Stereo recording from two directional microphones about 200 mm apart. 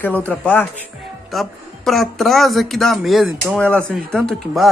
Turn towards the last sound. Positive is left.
turn(degrees=0)  # may be behind; listen again after turning